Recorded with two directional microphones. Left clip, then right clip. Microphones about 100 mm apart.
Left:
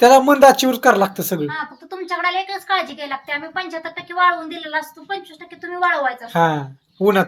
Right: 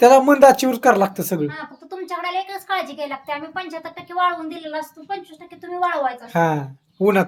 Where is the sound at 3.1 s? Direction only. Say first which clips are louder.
Left 3 dB; 50° right (ahead or behind).